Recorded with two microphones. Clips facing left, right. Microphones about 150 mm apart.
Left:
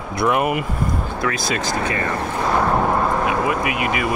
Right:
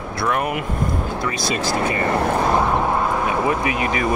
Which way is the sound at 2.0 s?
65° right (ahead or behind).